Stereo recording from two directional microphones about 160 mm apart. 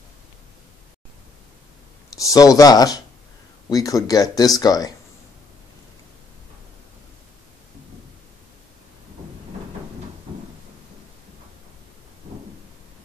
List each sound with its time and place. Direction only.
2.1 s speech: 20° left (ahead or behind)